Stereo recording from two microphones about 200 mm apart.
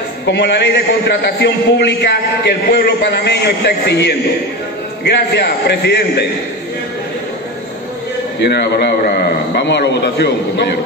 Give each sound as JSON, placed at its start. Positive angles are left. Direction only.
{"t": 0.3, "sound": "a man's voice", "side_deg": 55}
{"t": 8.4, "sound": "a man's voice", "side_deg": 55}